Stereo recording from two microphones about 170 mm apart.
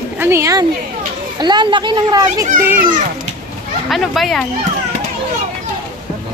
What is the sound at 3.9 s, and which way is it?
Speech, centre (ahead or behind).